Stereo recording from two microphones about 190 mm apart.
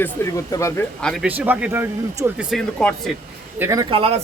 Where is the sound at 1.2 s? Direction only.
10° right (ahead or behind).